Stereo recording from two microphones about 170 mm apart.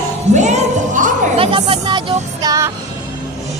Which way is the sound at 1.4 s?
30° right (ahead or behind).